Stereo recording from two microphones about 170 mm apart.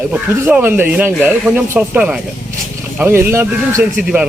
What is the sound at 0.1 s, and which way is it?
Speech, 10° right (ahead or behind).